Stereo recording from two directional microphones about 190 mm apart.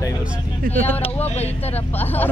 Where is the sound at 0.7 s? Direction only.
10° left (ahead or behind).